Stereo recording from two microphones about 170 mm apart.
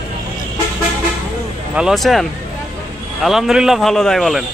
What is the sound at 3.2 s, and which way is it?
Speech, centre (ahead or behind).